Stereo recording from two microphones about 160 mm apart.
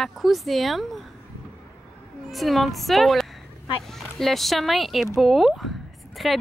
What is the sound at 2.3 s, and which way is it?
Speech, centre (ahead or behind).